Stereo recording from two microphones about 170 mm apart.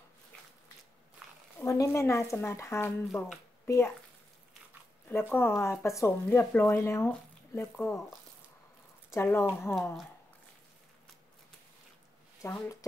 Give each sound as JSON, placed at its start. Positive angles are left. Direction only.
{"t": 1.6, "sound": "speech", "side_deg": 20}
{"t": 5.1, "sound": "speech", "side_deg": 15}
{"t": 9.1, "sound": "speech", "side_deg": 15}
{"t": 12.4, "sound": "speech", "side_deg": 20}